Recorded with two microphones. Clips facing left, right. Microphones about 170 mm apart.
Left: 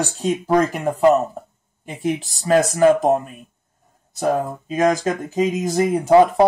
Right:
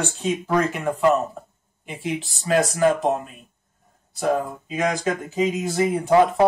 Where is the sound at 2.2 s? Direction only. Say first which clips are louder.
Left 3 dB; 40° left (ahead or behind).